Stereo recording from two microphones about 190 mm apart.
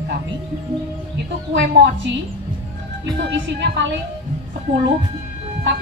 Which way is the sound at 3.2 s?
70° right (ahead or behind).